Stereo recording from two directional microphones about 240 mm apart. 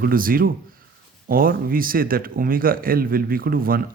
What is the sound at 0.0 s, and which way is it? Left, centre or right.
Speech, right.